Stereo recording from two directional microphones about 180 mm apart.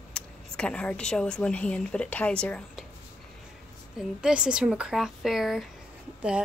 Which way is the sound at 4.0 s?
5° right (ahead or behind).